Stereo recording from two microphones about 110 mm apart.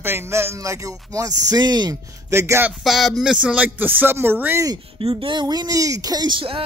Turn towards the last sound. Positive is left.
turn(degrees=-50)  # may be behind; listen again after turning